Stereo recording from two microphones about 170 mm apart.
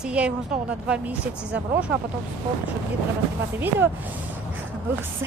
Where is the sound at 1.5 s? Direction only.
5° right (ahead or behind).